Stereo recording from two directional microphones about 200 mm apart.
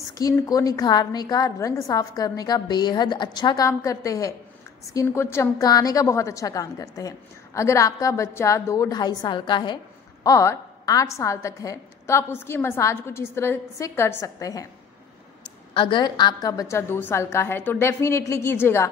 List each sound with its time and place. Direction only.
0.2 s a woman's voice: 15° left (ahead or behind)
15.7 s a woman's voice: 25° left (ahead or behind)